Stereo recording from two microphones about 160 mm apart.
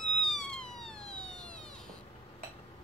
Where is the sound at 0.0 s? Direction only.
5° left (ahead or behind).